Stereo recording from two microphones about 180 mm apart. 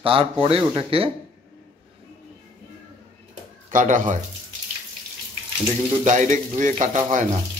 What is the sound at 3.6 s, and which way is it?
Speech, 45° right (ahead or behind).